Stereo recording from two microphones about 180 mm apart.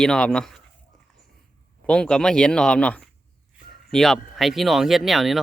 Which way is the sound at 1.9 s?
5° left (ahead or behind).